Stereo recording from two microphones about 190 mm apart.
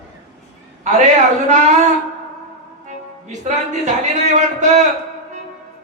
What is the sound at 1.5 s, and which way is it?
Speech, 40° right (ahead or behind).